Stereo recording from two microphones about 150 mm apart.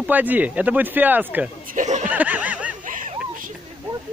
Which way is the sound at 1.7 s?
50° right (ahead or behind).